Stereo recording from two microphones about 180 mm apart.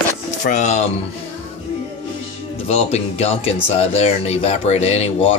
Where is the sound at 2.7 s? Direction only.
35° left (ahead or behind).